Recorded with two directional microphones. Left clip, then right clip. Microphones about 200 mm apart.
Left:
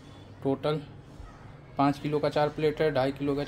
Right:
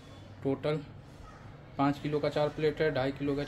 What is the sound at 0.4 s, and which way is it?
Speech, 15° left (ahead or behind).